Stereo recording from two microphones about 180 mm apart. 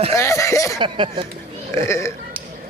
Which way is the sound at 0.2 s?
15° left (ahead or behind).